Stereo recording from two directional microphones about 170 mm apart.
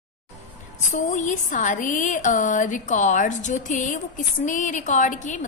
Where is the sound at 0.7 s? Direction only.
45° left (ahead or behind).